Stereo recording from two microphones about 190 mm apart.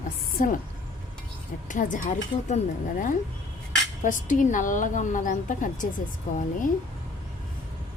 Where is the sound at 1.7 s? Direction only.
40° left (ahead or behind).